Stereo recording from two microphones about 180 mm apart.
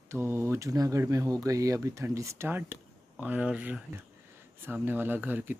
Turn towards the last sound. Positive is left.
turn(degrees=-10)  # may be behind; listen again after turning